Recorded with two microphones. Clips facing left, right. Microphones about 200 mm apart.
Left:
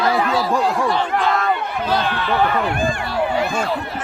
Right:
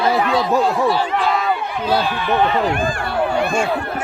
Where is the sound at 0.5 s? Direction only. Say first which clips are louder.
Right 4 dB; 5° right (ahead or behind).